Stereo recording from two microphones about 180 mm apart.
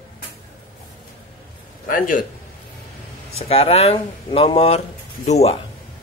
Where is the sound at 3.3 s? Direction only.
35° left (ahead or behind).